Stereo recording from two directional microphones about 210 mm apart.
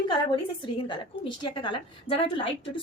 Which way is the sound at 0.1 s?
25° left (ahead or behind).